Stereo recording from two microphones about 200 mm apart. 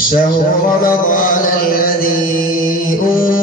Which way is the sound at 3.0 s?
45° left (ahead or behind).